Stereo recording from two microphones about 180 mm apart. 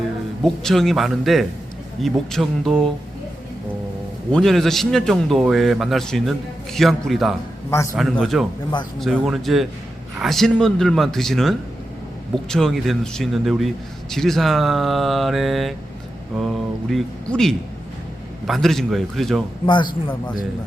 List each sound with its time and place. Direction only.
0.4 s a man's voice: centre (ahead or behind)
4.3 s a man's voice: 5° left (ahead or behind)
19.6 s speech: 25° left (ahead or behind)